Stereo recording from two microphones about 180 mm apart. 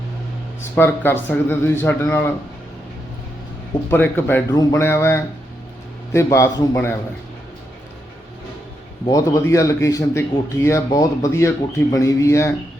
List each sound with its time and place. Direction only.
0.8 s speech: 10° left (ahead or behind)
3.8 s speech: 10° left (ahead or behind)
9.0 s speech: 20° left (ahead or behind)